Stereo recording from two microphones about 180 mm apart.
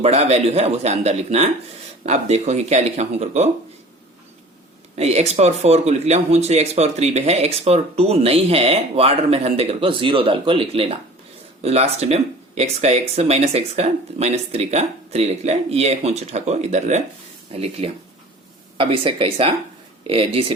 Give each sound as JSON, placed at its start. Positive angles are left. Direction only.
{"t": 0.0, "sound": "speech", "side_deg": -35}
{"t": 4.9, "sound": "speech", "side_deg": -35}